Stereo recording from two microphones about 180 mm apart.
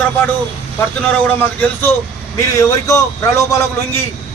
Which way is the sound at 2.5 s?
15° left (ahead or behind).